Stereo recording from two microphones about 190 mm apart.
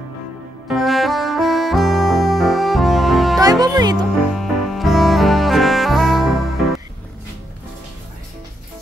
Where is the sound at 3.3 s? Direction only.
20° right (ahead or behind).